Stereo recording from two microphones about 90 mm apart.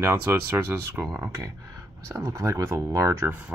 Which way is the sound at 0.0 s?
25° right (ahead or behind).